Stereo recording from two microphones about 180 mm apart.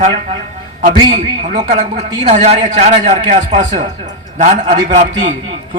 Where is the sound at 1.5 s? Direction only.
40° right (ahead or behind).